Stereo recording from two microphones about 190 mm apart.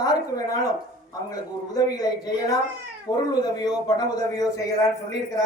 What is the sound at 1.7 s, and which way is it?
A woman's voice, 20° left (ahead or behind).